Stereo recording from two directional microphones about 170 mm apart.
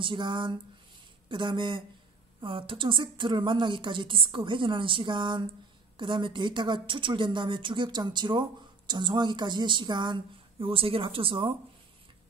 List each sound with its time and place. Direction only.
0.0 s speech: 30° right (ahead or behind)